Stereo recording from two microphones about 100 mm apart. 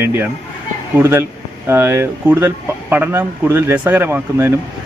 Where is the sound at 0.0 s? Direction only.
20° right (ahead or behind).